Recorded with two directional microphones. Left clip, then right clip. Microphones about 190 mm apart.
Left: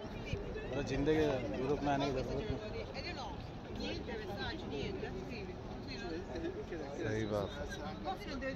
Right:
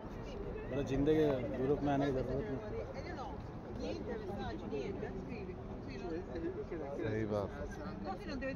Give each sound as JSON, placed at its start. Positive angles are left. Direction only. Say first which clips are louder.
{"t": 0.7, "sound": "speech", "louder": "right 1 dB", "side_deg": -60}
{"t": 7.1, "sound": "speech", "louder": "left 1 dB", "side_deg": -10}